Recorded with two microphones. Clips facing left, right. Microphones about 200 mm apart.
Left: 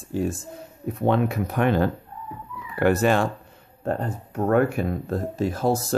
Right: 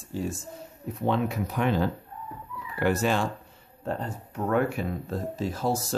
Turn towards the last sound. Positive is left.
turn(degrees=55)  # may be behind; listen again after turning